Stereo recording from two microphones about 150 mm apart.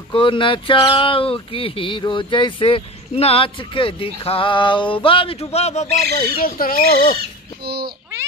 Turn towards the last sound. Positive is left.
turn(degrees=-90)